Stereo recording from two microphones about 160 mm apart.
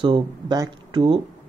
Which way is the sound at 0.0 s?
25° right (ahead or behind).